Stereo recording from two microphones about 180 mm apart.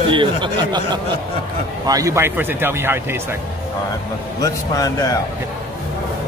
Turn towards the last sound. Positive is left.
turn(degrees=20)  # may be behind; listen again after turning